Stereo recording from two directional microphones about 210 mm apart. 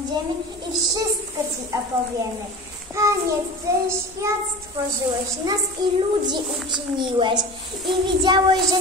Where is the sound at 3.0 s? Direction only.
15° right (ahead or behind).